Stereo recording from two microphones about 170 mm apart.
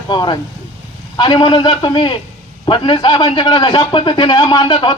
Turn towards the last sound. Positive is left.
turn(degrees=25)  # may be behind; listen again after turning